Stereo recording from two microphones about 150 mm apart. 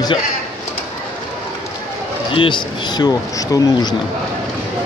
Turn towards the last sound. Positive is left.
turn(degrees=25)  # may be behind; listen again after turning